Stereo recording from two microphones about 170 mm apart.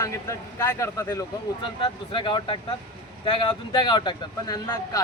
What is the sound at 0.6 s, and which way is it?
Speech, 15° left (ahead or behind).